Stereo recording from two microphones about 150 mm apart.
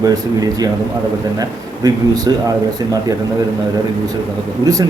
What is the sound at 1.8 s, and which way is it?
A man's voice, 25° right (ahead or behind).